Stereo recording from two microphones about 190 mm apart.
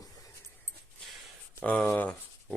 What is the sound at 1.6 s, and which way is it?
Speech, 5° left (ahead or behind).